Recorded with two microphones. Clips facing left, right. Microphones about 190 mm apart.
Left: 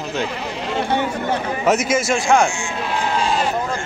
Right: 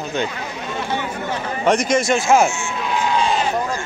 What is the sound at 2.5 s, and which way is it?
Speech, 15° left (ahead or behind).